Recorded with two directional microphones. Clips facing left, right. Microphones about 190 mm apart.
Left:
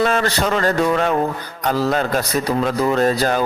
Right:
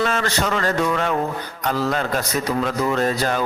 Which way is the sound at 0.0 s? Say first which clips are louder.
Left 4 dB; 35° left (ahead or behind).